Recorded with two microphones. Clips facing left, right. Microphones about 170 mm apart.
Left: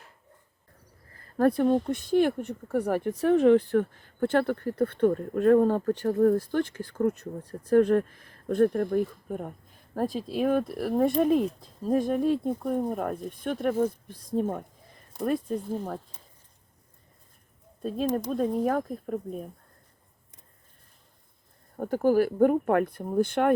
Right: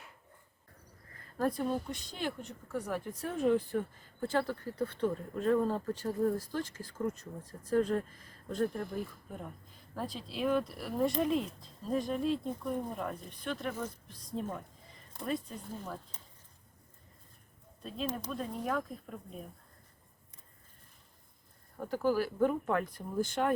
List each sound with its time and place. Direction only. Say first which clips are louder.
1.4 s speech: left 10 dB; 60° left (ahead or behind)
17.8 s speech: left 10 dB; 50° left (ahead or behind)
21.8 s speech: left 8 dB; 50° left (ahead or behind)